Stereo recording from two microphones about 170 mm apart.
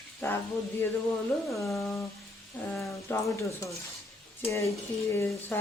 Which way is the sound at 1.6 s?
15° left (ahead or behind).